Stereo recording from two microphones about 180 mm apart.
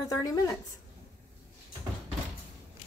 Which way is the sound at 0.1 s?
20° left (ahead or behind).